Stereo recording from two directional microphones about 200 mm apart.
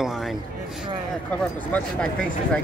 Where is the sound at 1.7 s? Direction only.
5° left (ahead or behind).